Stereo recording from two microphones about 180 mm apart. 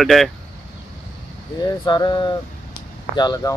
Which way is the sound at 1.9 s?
25° left (ahead or behind).